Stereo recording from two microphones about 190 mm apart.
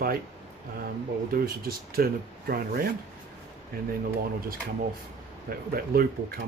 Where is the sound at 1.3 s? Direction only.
50° right (ahead or behind).